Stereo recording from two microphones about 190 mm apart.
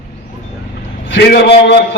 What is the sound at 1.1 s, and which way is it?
Speech, 60° left (ahead or behind).